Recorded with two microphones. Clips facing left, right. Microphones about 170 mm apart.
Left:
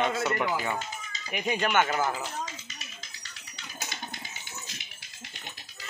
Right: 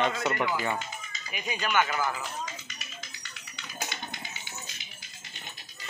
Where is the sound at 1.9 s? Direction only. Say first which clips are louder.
Left 2 dB; 30° left (ahead or behind).